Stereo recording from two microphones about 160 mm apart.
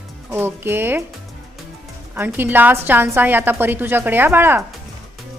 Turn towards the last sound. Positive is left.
turn(degrees=-15)  # may be behind; listen again after turning